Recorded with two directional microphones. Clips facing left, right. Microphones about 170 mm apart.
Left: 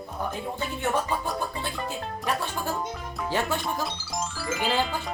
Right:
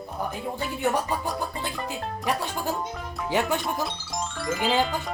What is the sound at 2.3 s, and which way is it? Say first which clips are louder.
Speech: right 1 dB; 15° right (ahead or behind).